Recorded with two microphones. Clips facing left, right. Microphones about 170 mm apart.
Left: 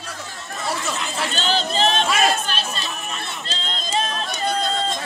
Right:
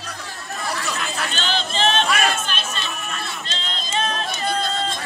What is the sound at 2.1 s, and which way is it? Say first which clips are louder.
Chatter: left 2 dB; 35° left (ahead or behind).